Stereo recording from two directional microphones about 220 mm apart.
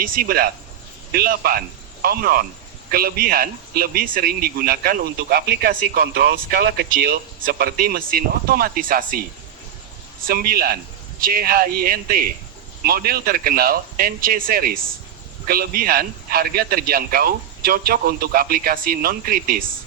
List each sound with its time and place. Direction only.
0.0 s a man's voice: 40° right (ahead or behind)
10.2 s a man's voice: 40° right (ahead or behind)